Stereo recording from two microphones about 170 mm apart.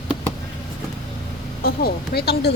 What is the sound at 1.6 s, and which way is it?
Speech, 65° left (ahead or behind).